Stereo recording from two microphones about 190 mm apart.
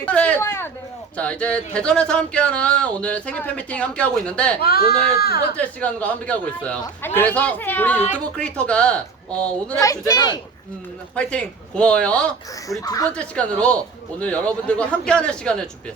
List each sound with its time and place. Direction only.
0.0 s speech: 5° left (ahead or behind)
4.6 s speech: 55° left (ahead or behind)
5.5 s speech: 5° left (ahead or behind)
10.1 s a man's voice: 20° left (ahead or behind)
11.1 s speech: 5° left (ahead or behind)
12.8 s a man's voice: 20° left (ahead or behind)
13.1 s speech: 5° left (ahead or behind)